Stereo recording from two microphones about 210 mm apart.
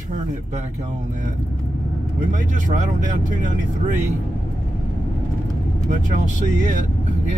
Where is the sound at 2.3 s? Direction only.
35° right (ahead or behind).